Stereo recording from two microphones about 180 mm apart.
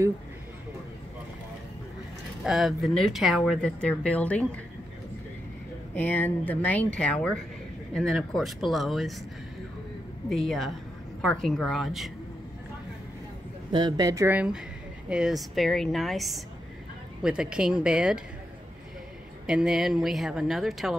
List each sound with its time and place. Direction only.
2.4 s speech: centre (ahead or behind)
5.9 s speech: 10° left (ahead or behind)
10.3 s a woman's voice: centre (ahead or behind)
13.7 s speech: 25° right (ahead or behind); by 18.2 s 5° right (ahead or behind)
19.4 s speech: 5° right (ahead or behind)